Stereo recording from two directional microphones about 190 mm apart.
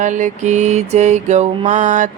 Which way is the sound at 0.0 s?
40° right (ahead or behind).